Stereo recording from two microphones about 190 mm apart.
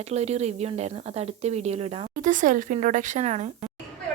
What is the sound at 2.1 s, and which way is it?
Speech, 45° right (ahead or behind).